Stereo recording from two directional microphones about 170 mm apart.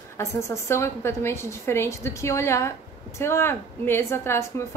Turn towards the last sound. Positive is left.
turn(degrees=15)  # may be behind; listen again after turning